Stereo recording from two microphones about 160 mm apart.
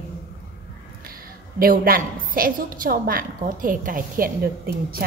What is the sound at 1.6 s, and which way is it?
A woman's voice, 65° right (ahead or behind).